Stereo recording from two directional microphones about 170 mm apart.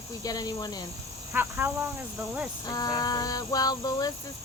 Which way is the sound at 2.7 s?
25° left (ahead or behind).